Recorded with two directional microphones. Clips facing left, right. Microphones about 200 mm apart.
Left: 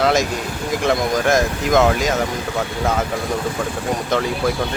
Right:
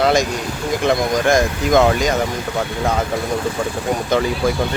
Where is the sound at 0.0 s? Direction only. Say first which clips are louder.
Right 1 dB; centre (ahead or behind).